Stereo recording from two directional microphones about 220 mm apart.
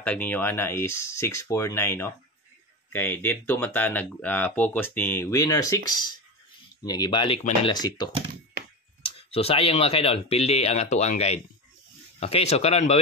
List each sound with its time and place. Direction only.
0.0 s speech: 5° left (ahead or behind)
9.3 s speech: 25° left (ahead or behind)